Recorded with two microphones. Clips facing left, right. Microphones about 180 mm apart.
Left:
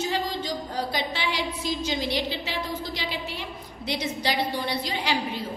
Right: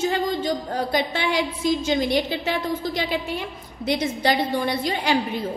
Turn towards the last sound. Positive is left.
turn(degrees=-50)  # may be behind; listen again after turning